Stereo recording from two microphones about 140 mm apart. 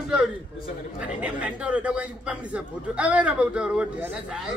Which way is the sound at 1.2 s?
10° right (ahead or behind).